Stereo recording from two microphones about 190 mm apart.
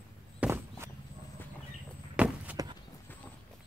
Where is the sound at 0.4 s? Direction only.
15° right (ahead or behind).